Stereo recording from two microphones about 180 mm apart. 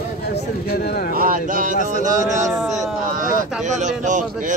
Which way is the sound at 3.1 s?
50° right (ahead or behind).